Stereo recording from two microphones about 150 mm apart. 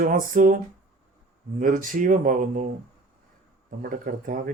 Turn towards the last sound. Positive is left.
turn(degrees=-65)  # may be behind; listen again after turning